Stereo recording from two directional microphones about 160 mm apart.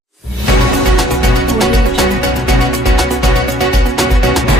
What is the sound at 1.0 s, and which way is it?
Music, centre (ahead or behind).